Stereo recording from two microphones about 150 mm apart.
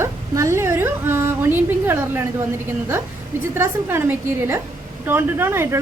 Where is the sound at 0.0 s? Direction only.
20° right (ahead or behind).